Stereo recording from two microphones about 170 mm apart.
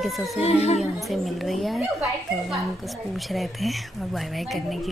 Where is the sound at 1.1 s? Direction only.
Centre (ahead or behind).